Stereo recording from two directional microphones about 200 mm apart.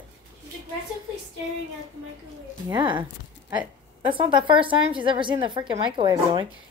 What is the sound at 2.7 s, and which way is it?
Speech, 25° right (ahead or behind).